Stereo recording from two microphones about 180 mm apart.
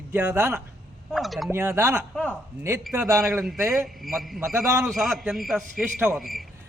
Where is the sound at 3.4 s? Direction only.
Centre (ahead or behind).